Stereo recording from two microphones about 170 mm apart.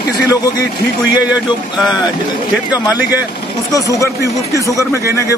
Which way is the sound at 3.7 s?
20° left (ahead or behind).